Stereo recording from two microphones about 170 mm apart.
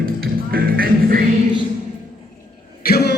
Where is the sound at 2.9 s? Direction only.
70° left (ahead or behind).